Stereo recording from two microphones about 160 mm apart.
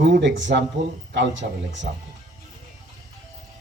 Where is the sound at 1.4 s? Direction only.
65° right (ahead or behind).